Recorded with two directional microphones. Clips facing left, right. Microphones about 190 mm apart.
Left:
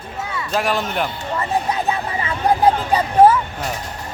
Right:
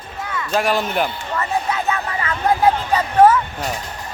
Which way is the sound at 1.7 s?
30° left (ahead or behind).